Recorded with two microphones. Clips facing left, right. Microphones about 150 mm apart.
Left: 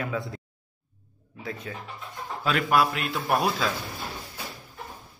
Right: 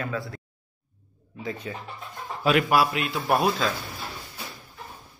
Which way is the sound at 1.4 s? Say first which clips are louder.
Right 2 dB; centre (ahead or behind).